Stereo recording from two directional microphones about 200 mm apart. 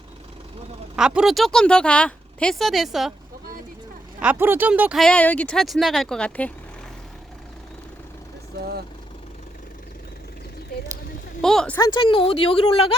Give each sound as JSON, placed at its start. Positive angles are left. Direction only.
{"t": 0.9, "sound": "speech", "side_deg": -5}
{"t": 4.2, "sound": "speech", "side_deg": -10}
{"t": 11.4, "sound": "speech", "side_deg": 5}
{"t": 11.8, "sound": "a woman's voice", "side_deg": 25}